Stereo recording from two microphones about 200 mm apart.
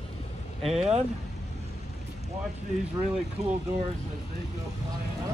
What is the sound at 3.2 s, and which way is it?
Speech, 30° right (ahead or behind).